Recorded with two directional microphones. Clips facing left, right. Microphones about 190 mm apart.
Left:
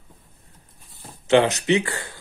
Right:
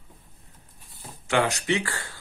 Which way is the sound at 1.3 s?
20° left (ahead or behind).